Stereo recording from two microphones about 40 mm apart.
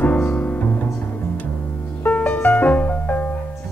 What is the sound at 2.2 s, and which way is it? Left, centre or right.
Music, left.